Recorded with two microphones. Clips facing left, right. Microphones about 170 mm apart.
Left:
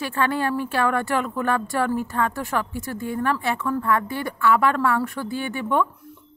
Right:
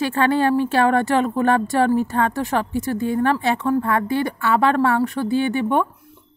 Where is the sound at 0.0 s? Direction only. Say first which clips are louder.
Right 5 dB; 80° right.